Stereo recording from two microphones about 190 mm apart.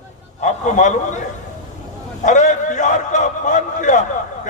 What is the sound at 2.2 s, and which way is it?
A man's voice, 40° left (ahead or behind).